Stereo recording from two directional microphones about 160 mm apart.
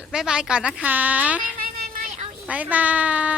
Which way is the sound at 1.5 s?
65° right (ahead or behind).